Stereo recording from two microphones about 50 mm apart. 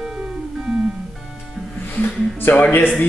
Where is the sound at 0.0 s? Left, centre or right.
Centre.